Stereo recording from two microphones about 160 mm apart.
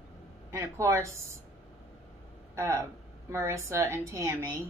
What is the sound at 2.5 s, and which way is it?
Speech, 20° right (ahead or behind).